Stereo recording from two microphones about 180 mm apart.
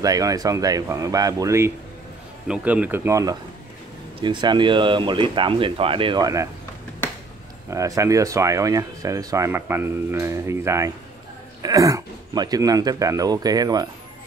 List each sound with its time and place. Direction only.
0.0 s speech: 20° right (ahead or behind)
7.7 s speech: 15° right (ahead or behind)